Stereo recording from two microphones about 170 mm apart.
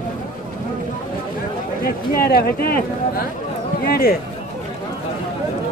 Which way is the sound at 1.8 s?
60° left (ahead or behind).